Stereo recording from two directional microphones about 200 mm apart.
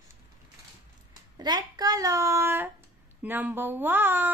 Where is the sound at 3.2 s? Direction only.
10° right (ahead or behind).